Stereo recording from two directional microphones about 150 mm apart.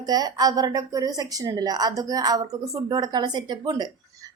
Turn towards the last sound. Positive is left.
turn(degrees=-25)  # may be behind; listen again after turning